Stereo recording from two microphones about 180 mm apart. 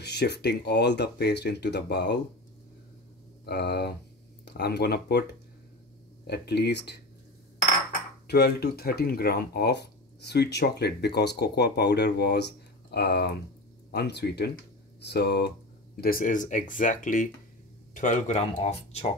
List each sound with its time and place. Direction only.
0.0 s speech: 65° left (ahead or behind)
3.4 s speech: 70° left (ahead or behind)
6.2 s speech: 65° left (ahead or behind)
8.3 s speech: 60° left (ahead or behind)
16.0 s speech: 50° left (ahead or behind)